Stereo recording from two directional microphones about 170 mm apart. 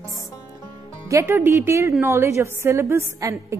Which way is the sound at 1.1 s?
15° right (ahead or behind).